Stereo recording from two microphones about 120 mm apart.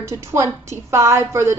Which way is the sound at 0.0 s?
25° right (ahead or behind).